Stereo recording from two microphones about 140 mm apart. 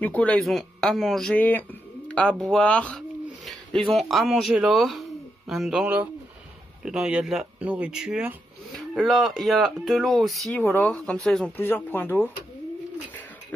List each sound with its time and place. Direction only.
0.0 s speech: 10° left (ahead or behind)
10.5 s speech: 15° left (ahead or behind)
11.5 s speech: 15° left (ahead or behind)